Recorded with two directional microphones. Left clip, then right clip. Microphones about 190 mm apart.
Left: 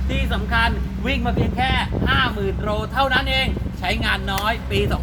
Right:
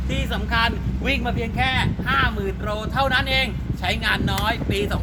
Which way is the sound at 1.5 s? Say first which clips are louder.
Right 1 dB; 25° right (ahead or behind).